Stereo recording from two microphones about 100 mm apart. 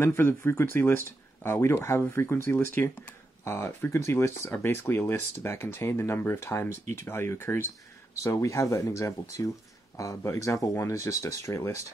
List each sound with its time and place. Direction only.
0.0 s speech: 25° left (ahead or behind)